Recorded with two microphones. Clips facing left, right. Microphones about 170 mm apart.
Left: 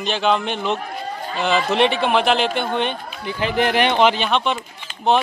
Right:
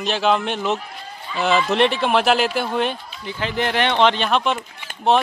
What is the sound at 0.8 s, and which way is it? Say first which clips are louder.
Speech: left 8 dB; 45° left (ahead or behind).